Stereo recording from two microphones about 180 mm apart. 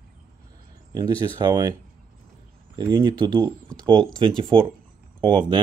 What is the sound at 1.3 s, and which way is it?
Speech, 20° right (ahead or behind).